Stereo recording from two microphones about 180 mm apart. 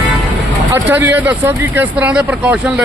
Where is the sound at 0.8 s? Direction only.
10° right (ahead or behind).